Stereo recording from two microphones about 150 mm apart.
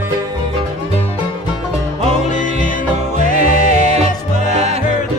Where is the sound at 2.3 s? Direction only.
60° left (ahead or behind).